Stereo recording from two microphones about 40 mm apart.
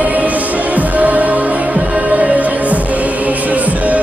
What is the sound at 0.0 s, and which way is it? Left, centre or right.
Music, right.